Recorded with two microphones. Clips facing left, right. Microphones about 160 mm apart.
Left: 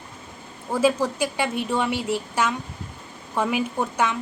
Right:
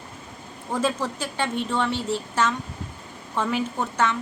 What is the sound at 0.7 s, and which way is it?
A woman's voice, 10° left (ahead or behind).